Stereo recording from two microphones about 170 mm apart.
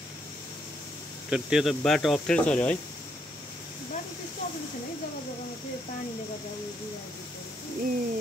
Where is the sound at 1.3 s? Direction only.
5° right (ahead or behind).